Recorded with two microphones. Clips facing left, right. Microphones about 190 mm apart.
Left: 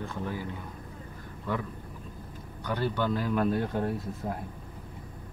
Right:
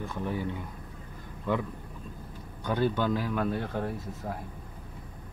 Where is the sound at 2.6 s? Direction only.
20° right (ahead or behind).